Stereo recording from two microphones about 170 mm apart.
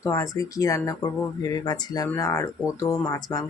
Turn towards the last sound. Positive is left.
turn(degrees=20)  # may be behind; listen again after turning